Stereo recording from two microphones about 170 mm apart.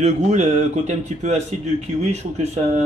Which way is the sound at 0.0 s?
45° right (ahead or behind).